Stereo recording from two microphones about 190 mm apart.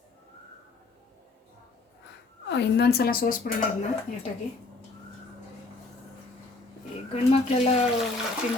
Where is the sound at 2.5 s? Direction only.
65° left (ahead or behind); by 3.6 s 45° left (ahead or behind).